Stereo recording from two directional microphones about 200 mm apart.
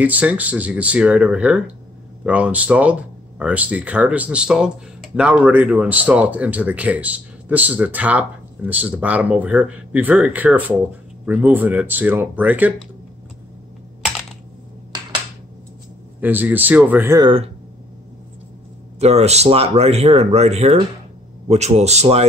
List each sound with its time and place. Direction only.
0.0 s speech: 5° right (ahead or behind)
16.2 s speech: 10° right (ahead or behind)
17.2 s speech: 25° right (ahead or behind)
18.9 s speech: 30° right (ahead or behind)